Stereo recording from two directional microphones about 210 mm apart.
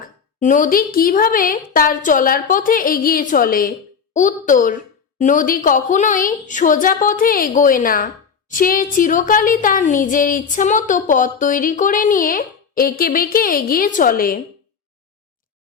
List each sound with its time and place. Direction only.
0.3 s a woman's voice: 35° left (ahead or behind)